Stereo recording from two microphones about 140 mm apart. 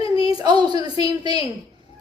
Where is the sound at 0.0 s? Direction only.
40° left (ahead or behind).